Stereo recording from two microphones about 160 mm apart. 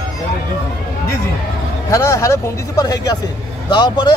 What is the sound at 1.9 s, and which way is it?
Speech, 20° left (ahead or behind).